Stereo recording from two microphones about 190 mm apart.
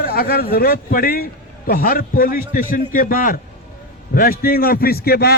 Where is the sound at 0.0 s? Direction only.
55° left (ahead or behind).